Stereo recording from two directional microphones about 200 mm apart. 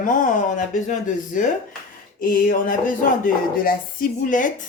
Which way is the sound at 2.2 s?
45° left (ahead or behind).